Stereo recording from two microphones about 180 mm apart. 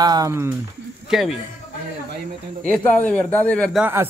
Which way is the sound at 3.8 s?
15° right (ahead or behind).